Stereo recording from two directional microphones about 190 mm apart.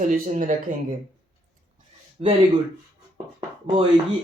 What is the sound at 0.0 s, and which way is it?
Speech, 40° right (ahead or behind).